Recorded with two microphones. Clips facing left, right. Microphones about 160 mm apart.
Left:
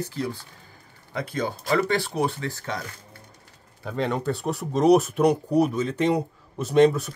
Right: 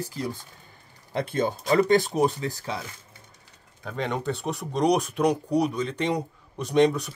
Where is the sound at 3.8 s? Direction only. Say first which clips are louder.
Left 3 dB; 5° left (ahead or behind).